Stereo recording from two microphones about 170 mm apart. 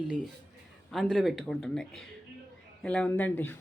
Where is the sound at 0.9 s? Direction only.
Centre (ahead or behind).